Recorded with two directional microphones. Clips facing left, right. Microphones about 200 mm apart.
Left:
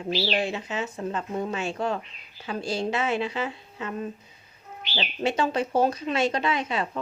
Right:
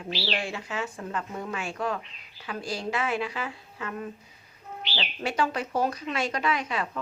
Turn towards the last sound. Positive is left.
turn(degrees=25)  # may be behind; listen again after turning